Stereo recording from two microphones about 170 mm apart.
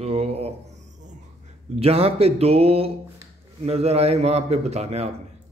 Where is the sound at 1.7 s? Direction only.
35° right (ahead or behind).